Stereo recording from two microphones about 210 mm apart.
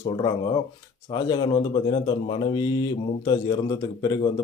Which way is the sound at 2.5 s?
20° left (ahead or behind).